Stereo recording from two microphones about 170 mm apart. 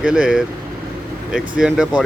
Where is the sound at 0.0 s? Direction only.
5° right (ahead or behind).